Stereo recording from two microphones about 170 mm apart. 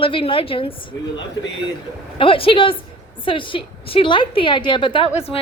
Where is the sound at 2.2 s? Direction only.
30° left (ahead or behind).